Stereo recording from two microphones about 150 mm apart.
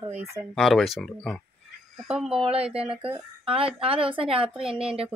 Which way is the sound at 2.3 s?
40° right (ahead or behind).